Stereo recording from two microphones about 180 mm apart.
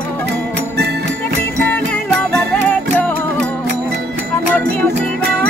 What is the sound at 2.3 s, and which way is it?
Music, 10° left (ahead or behind).